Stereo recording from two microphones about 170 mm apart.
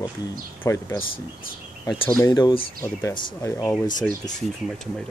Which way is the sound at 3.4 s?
15° left (ahead or behind).